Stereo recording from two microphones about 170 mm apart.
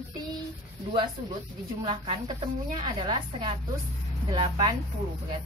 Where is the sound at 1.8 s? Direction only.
30° right (ahead or behind).